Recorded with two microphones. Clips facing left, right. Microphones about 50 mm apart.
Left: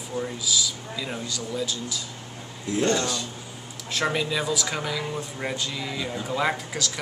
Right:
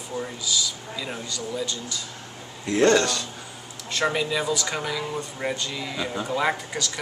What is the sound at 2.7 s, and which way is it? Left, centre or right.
Speech, right.